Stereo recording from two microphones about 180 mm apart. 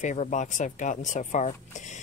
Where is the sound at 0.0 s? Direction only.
45° left (ahead or behind).